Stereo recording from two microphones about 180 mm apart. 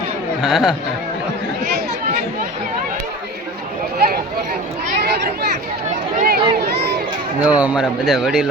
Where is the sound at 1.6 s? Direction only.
60° right (ahead or behind).